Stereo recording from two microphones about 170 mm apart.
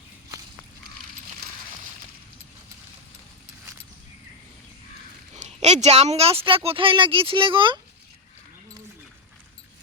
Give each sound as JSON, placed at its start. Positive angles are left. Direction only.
{"t": 5.3, "sound": "speech", "side_deg": -40}